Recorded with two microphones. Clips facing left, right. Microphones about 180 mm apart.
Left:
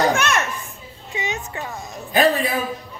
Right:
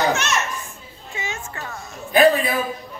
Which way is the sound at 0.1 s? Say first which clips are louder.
Left 2 dB; 55° left (ahead or behind).